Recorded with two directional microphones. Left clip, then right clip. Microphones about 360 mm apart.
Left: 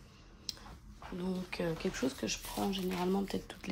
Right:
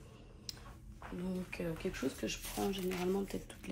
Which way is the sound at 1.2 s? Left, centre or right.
Centre.